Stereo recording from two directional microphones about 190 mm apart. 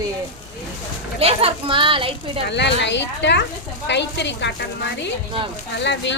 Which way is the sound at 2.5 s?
65° left (ahead or behind).